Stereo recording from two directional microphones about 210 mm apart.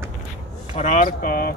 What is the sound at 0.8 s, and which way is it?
Speech, 40° left (ahead or behind).